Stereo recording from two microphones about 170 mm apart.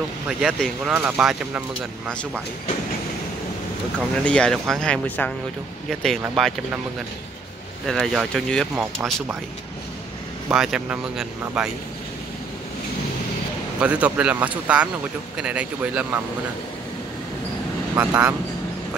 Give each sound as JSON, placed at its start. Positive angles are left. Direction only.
{"t": 0.4, "sound": "speech", "side_deg": 0}
{"t": 0.9, "sound": "speech", "side_deg": -15}
{"t": 4.1, "sound": "speech", "side_deg": 5}
{"t": 7.8, "sound": "speech", "side_deg": 0}
{"t": 8.7, "sound": "speech", "side_deg": -10}
{"t": 10.5, "sound": "speech", "side_deg": -5}
{"t": 13.7, "sound": "speech", "side_deg": -5}
{"t": 17.9, "sound": "speech", "side_deg": -10}